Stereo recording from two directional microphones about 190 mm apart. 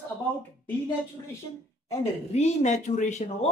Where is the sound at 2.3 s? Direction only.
35° left (ahead or behind).